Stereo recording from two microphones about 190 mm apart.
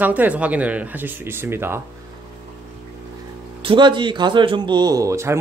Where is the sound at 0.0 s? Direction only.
10° right (ahead or behind).